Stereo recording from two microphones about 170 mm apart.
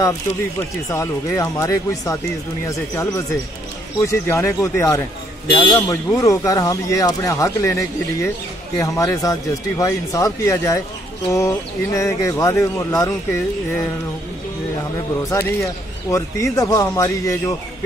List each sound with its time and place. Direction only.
0.8 s speech: 20° left (ahead or behind)
15.2 s speech: 20° left (ahead or behind)